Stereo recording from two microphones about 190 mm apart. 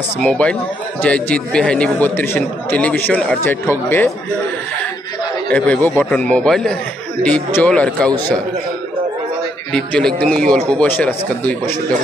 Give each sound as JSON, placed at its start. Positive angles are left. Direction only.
{"t": 0.2, "sound": "a man's voice", "side_deg": 5}
{"t": 5.5, "sound": "speech", "side_deg": 10}
{"t": 9.7, "sound": "a man's voice", "side_deg": 5}